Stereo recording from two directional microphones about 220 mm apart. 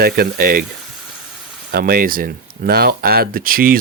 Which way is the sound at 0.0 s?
45° right (ahead or behind).